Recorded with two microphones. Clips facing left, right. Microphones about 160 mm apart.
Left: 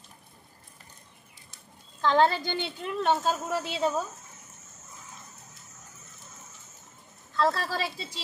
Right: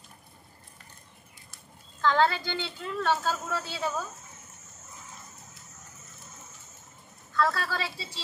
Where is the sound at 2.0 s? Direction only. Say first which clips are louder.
Left 2 dB; 20° left (ahead or behind).